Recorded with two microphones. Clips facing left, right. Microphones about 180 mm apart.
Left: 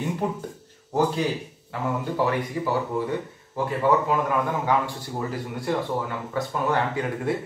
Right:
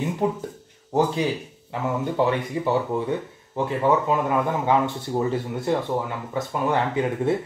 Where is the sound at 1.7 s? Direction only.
20° right (ahead or behind).